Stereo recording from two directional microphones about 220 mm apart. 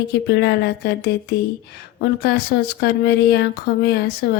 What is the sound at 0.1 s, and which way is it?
A woman's voice, 50° left (ahead or behind).